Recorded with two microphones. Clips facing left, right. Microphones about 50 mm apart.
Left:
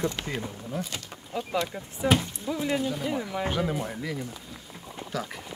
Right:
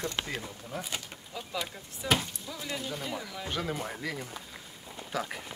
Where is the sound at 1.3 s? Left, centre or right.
Left.